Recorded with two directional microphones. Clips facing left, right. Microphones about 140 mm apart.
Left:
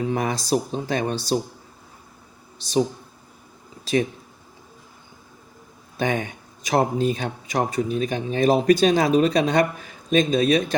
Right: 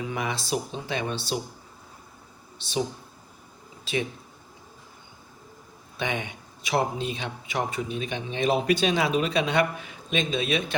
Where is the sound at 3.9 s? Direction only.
40° left (ahead or behind).